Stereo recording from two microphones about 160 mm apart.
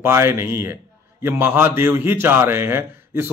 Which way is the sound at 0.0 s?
15° right (ahead or behind).